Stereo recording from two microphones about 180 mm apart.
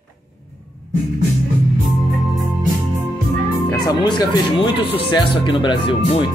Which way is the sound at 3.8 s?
20° left (ahead or behind).